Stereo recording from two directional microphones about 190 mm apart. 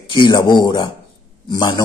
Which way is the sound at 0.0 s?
25° left (ahead or behind).